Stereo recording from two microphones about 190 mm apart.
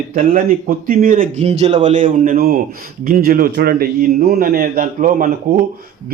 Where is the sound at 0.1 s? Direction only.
45° right (ahead or behind).